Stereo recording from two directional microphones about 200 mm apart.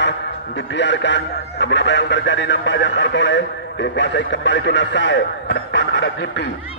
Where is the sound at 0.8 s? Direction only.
60° left (ahead or behind).